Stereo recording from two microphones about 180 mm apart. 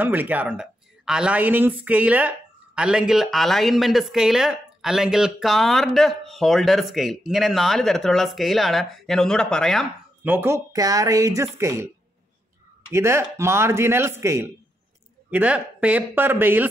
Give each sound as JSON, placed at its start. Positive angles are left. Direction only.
{"t": 0.0, "sound": "speech", "side_deg": -10}
{"t": 10.2, "sound": "speech", "side_deg": -10}
{"t": 12.9, "sound": "speech", "side_deg": -15}